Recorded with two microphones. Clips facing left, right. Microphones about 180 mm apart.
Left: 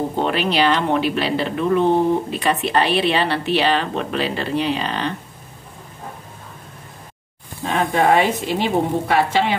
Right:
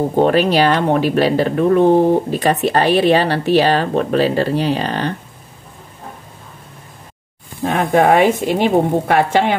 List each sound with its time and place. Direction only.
0.1 s speech: 45° right (ahead or behind)
7.6 s speech: 55° right (ahead or behind)